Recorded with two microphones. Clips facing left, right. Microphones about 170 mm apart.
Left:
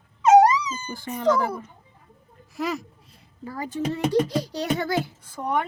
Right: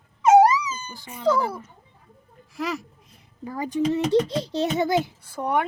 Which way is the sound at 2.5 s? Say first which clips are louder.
Left 1 dB; centre (ahead or behind).